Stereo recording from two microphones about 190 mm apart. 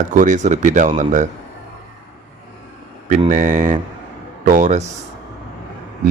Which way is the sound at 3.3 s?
40° right (ahead or behind).